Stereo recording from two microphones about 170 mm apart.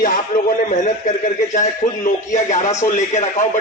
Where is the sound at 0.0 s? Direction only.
55° left (ahead or behind).